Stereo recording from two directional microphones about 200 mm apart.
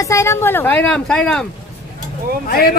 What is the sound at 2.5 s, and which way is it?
Speech, 50° left (ahead or behind).